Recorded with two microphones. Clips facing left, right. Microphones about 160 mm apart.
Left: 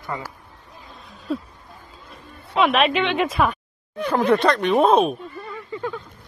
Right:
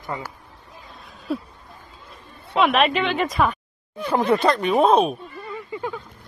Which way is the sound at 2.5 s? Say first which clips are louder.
Even; centre (ahead or behind).